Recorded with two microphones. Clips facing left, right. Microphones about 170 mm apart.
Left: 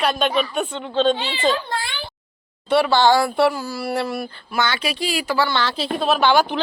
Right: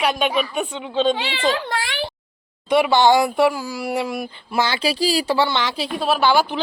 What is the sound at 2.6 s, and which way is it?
Speech, 15° right (ahead or behind).